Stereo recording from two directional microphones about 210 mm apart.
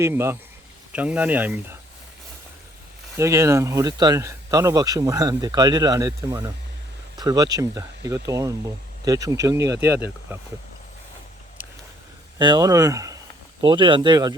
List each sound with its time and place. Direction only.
0.0 s speech: 10° right (ahead or behind)
3.2 s speech: 15° right (ahead or behind)
11.6 s a sound: 10° right (ahead or behind)
12.4 s speech: 20° right (ahead or behind)